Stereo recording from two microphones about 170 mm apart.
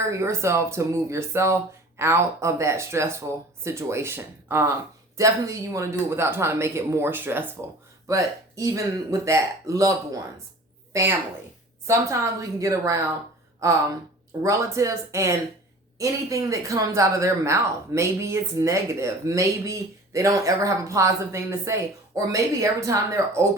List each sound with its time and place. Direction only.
0.1 s speech: 15° right (ahead or behind)
11.9 s speech: 15° right (ahead or behind)